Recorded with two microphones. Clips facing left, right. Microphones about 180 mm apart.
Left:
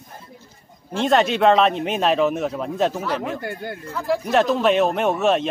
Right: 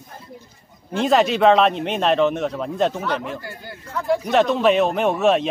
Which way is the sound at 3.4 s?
60° left (ahead or behind).